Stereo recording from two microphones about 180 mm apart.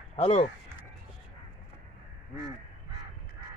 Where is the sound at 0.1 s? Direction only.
35° left (ahead or behind).